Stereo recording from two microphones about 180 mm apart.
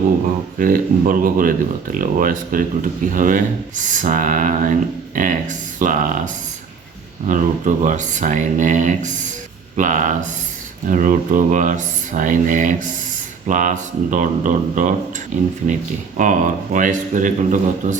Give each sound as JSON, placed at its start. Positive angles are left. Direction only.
{"t": 0.6, "sound": "speech", "side_deg": -50}
{"t": 7.3, "sound": "speech", "side_deg": -45}